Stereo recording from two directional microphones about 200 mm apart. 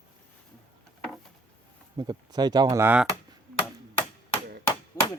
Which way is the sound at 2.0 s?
20° right (ahead or behind).